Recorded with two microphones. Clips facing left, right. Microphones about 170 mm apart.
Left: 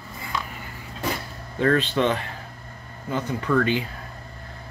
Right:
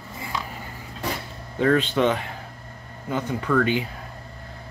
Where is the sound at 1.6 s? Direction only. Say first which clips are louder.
Right 1 dB; 10° right (ahead or behind).